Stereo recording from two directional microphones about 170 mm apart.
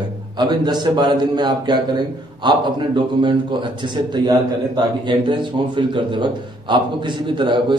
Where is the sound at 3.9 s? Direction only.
25° right (ahead or behind).